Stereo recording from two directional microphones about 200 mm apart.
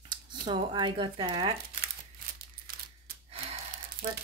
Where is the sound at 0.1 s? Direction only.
20° right (ahead or behind).